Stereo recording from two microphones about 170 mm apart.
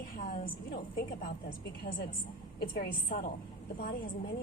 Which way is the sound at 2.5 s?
65° left (ahead or behind).